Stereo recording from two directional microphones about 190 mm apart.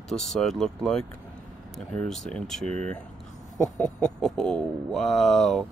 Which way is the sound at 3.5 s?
40° left (ahead or behind).